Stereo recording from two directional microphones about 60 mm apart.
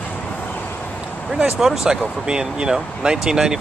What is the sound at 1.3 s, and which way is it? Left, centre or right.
Speech, centre.